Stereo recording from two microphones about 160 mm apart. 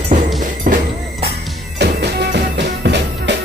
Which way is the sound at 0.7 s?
55° right (ahead or behind).